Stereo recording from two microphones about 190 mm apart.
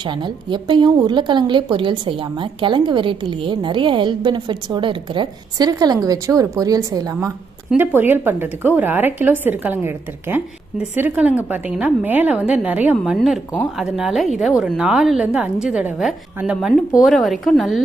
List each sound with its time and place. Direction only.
0.0 s a woman's voice: 25° right (ahead or behind); by 17.8 s centre (ahead or behind)